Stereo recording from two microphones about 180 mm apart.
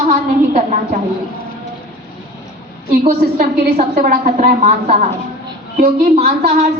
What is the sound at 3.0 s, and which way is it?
Speech, 35° right (ahead or behind).